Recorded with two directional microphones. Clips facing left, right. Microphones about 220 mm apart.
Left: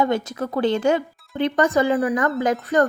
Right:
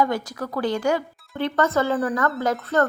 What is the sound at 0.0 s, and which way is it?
A woman's voice, 25° left (ahead or behind).